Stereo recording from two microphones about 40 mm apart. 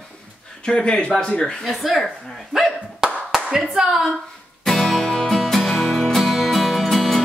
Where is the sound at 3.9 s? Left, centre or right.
Centre.